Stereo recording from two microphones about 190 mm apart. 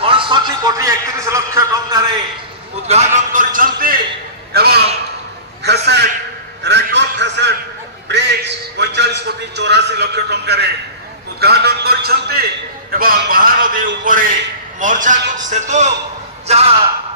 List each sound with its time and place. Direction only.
0.0 s a man's voice: 25° right (ahead or behind)
2.9 s a man's voice: 35° right (ahead or behind)